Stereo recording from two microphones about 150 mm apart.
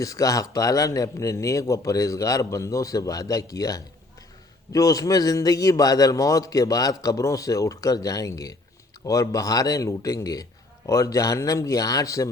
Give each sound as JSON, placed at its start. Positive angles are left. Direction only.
{"t": 0.0, "sound": "speech", "side_deg": 20}